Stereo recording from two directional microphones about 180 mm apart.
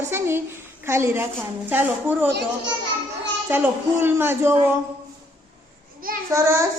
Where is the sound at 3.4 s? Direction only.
10° right (ahead or behind).